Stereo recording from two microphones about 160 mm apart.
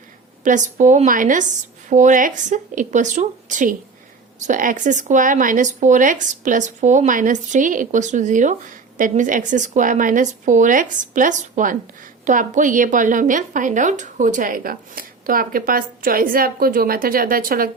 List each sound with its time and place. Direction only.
0.4 s speech: 50° right (ahead or behind)